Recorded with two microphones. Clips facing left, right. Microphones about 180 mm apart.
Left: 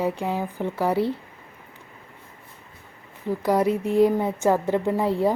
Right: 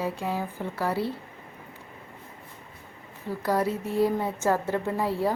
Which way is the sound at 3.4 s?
15° left (ahead or behind).